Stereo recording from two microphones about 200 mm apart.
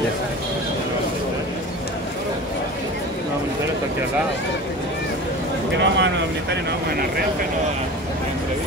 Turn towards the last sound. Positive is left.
turn(degrees=-55)  # may be behind; listen again after turning